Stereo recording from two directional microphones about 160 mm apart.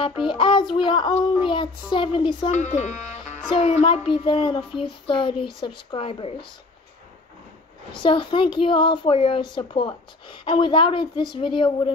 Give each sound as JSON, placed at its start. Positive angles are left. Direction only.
{"t": 0.3, "sound": "a woman's voice", "side_deg": 30}
{"t": 2.5, "sound": "a woman's voice", "side_deg": 45}
{"t": 7.9, "sound": "a woman's voice", "side_deg": 30}